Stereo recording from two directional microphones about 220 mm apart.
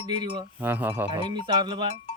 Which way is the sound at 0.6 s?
10° right (ahead or behind).